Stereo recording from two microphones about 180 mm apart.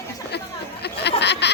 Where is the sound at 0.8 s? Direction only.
70° left (ahead or behind).